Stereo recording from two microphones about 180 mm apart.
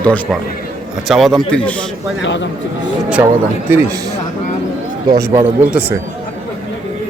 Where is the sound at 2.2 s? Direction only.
90° left.